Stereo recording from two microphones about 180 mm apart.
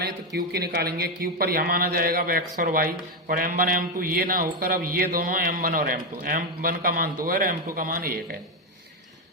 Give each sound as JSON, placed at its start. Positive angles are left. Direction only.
{"t": 0.0, "sound": "speech", "side_deg": -60}